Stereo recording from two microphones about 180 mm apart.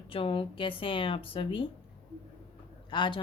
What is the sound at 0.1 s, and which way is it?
Speech, 30° left (ahead or behind).